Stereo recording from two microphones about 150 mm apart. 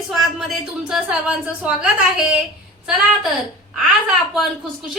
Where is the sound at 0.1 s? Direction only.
Centre (ahead or behind).